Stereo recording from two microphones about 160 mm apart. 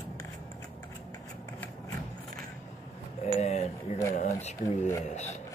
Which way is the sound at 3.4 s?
45° left (ahead or behind).